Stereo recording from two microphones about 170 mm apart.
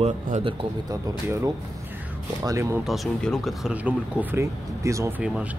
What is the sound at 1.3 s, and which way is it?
Speech, 20° right (ahead or behind).